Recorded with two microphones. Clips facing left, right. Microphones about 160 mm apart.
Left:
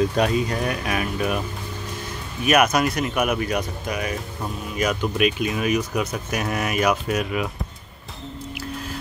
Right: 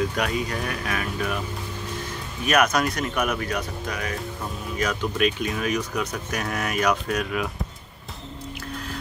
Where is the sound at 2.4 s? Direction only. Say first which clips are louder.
Left 3 dB; 10° left (ahead or behind).